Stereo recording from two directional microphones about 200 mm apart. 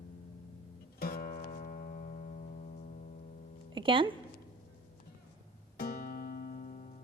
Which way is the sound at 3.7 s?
25° right (ahead or behind).